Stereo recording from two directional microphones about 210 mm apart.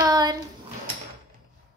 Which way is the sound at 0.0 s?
20° right (ahead or behind).